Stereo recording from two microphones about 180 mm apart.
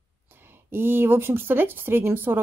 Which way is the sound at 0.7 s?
10° right (ahead or behind).